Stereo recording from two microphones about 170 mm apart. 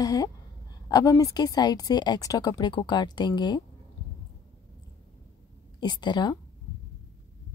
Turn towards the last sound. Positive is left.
turn(degrees=25)  # may be behind; listen again after turning